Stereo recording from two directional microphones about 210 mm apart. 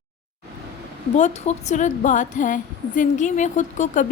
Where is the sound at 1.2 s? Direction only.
35° left (ahead or behind).